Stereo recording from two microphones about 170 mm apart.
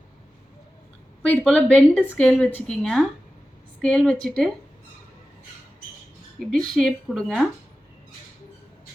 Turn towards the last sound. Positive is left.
turn(degrees=0)  # may be behind; listen again after turning